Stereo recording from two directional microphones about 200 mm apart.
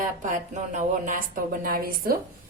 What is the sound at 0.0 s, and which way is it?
Speech, 40° right (ahead or behind).